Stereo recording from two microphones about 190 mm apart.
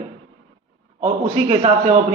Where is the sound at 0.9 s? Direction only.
35° right (ahead or behind).